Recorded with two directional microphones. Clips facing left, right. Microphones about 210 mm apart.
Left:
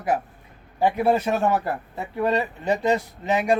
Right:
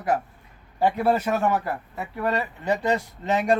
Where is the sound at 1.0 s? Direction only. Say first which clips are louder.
Left 2 dB; 25° left (ahead or behind).